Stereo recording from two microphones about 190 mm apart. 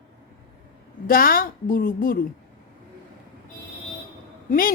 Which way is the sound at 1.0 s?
50° left (ahead or behind).